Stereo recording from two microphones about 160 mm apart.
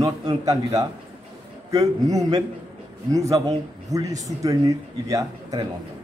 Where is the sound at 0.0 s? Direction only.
20° right (ahead or behind).